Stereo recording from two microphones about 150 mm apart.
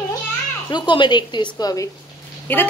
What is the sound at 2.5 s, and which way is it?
Speech, 10° left (ahead or behind).